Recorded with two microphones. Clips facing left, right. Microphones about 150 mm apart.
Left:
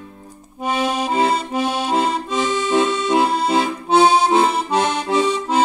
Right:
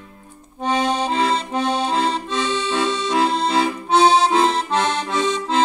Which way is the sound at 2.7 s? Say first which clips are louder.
Left 4 dB; 25° left (ahead or behind).